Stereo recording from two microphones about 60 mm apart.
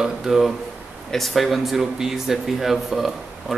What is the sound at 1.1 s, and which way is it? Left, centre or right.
Speech, centre.